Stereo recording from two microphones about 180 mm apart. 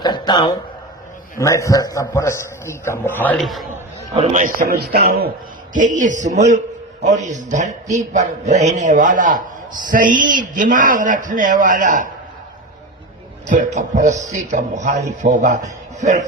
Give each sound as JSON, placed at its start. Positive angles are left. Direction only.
{"t": 0.0, "sound": "a sound", "side_deg": 25}
{"t": 1.4, "sound": "a man's voice", "side_deg": 15}
{"t": 4.1, "sound": "a man's voice", "side_deg": -35}
{"t": 5.7, "sound": "a man's voice", "side_deg": -45}
{"t": 13.5, "sound": "a man's voice", "side_deg": -45}